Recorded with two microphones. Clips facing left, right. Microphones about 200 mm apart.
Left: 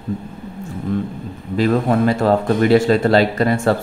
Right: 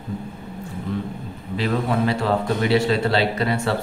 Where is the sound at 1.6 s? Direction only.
45° left (ahead or behind).